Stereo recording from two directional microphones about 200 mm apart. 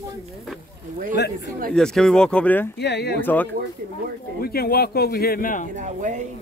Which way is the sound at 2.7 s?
60° left (ahead or behind).